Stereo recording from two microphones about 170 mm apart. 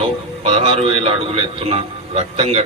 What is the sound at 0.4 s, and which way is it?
A man's voice, 35° right (ahead or behind).